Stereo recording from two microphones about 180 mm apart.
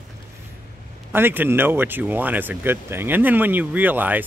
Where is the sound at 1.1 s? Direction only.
10° right (ahead or behind).